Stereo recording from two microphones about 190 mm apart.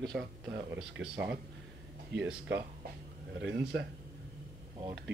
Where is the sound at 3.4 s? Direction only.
60° right (ahead or behind).